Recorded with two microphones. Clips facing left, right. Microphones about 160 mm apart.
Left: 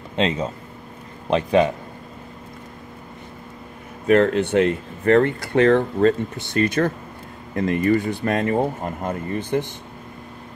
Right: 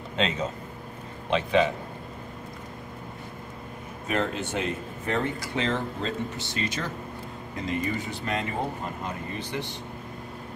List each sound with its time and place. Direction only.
1.3 s a man's voice: 45° left (ahead or behind)
4.1 s speech: 60° left (ahead or behind)